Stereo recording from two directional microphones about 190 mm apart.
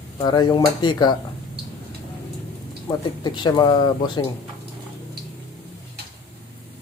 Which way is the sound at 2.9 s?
20° left (ahead or behind).